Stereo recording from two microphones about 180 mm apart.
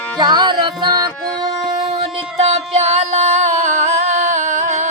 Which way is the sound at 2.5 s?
35° right (ahead or behind).